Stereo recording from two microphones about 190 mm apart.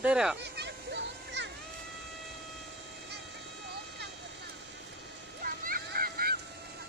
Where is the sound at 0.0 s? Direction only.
5° right (ahead or behind).